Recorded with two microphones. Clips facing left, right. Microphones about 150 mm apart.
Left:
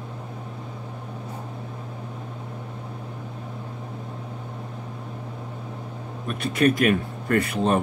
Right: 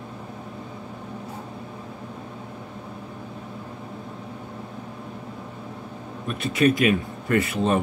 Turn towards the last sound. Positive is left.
turn(degrees=55)  # may be behind; listen again after turning